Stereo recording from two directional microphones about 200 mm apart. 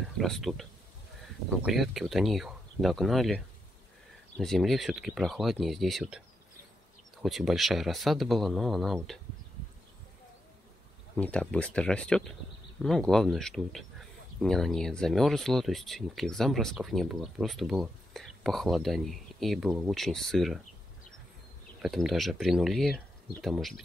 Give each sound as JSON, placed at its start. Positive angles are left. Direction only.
{"t": 0.2, "sound": "speech", "side_deg": 0}
{"t": 7.2, "sound": "speech", "side_deg": 0}
{"t": 11.1, "sound": "speech", "side_deg": 5}
{"t": 21.8, "sound": "speech", "side_deg": 0}